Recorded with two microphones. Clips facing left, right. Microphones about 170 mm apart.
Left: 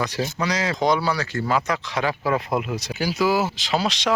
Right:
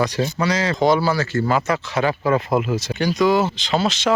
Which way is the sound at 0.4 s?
Centre (ahead or behind).